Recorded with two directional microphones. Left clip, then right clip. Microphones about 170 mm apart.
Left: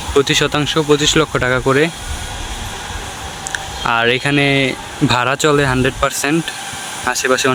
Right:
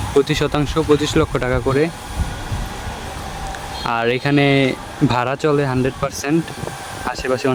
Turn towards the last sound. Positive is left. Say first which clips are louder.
# left 5 dB
turn(degrees=-5)  # may be behind; listen again after turning